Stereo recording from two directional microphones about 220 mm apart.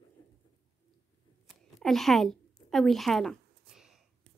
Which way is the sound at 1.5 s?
Centre (ahead or behind).